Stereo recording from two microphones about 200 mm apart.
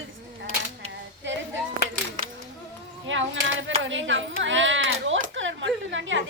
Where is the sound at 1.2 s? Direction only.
65° right (ahead or behind).